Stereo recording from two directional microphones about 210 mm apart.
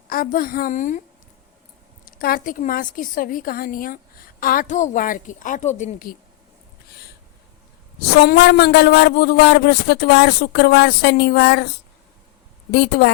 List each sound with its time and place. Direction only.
0.1 s a man's voice: 45° left (ahead or behind)
2.0 s a man's voice: 45° left (ahead or behind)
8.1 s a man's voice: 50° left (ahead or behind)
12.7 s a man's voice: 50° left (ahead or behind)